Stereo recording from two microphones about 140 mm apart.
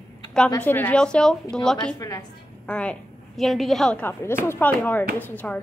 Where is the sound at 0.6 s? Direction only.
10° left (ahead or behind).